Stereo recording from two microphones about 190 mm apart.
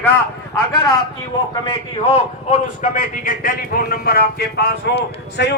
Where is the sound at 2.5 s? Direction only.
40° left (ahead or behind).